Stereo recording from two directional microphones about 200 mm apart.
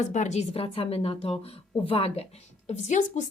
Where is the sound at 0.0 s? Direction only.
35° left (ahead or behind).